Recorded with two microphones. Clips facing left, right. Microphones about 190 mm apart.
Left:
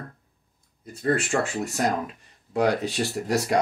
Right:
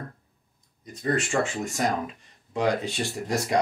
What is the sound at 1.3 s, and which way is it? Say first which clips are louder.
Speech: left 1 dB; 35° left (ahead or behind).